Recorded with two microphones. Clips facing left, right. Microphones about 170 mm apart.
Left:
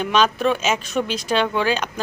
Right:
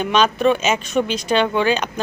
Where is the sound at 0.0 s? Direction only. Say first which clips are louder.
Right 2 dB; centre (ahead or behind).